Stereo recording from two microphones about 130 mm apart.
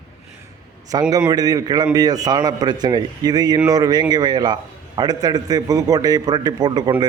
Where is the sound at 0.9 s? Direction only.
30° right (ahead or behind).